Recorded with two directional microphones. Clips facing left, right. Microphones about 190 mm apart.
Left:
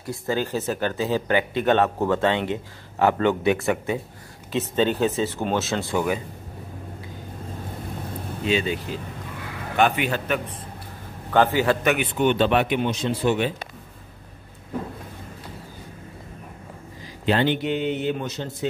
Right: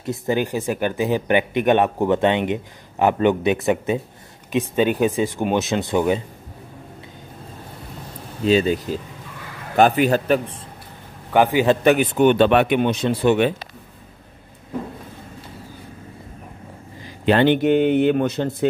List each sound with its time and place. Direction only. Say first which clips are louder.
0.0 s speech: right 4 dB; 20° right (ahead or behind)
8.5 s a man's voice: right 7 dB; 40° right (ahead or behind)
11.3 s a man's voice: right 3 dB; 15° right (ahead or behind)
11.9 s speech: right 6 dB; 45° right (ahead or behind); by 13.5 s 60° right (ahead or behind)
17.3 s speech: right 6 dB; 60° right (ahead or behind)